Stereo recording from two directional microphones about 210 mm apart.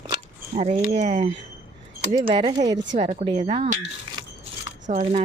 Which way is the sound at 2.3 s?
25° right (ahead or behind).